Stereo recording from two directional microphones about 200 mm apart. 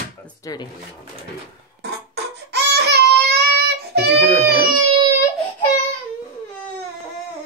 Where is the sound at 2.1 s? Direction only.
55° right (ahead or behind).